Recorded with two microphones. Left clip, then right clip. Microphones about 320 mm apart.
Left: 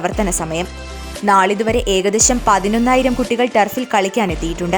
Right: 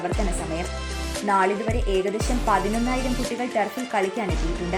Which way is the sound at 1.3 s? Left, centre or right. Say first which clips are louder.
Left 9 dB; left.